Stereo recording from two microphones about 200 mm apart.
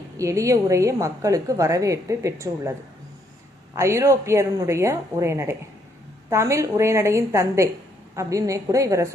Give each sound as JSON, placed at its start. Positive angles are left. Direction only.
{"t": 0.2, "sound": "a woman's voice", "side_deg": -15}
{"t": 3.8, "sound": "a woman's voice", "side_deg": -15}